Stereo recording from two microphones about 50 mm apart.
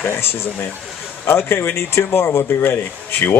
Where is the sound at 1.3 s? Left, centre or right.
Left.